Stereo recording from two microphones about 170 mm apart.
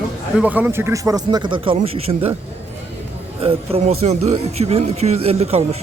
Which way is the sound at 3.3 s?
35° right (ahead or behind).